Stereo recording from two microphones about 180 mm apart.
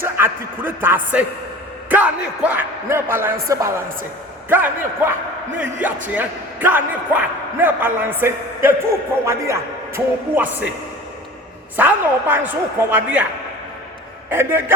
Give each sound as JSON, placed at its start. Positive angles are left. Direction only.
{"t": 0.0, "sound": "a man's voice", "side_deg": -10}
{"t": 11.8, "sound": "a man's voice", "side_deg": -10}
{"t": 14.3, "sound": "a man's voice", "side_deg": -10}